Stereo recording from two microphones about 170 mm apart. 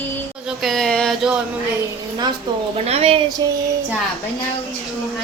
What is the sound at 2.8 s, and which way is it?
Speech, 35° right (ahead or behind).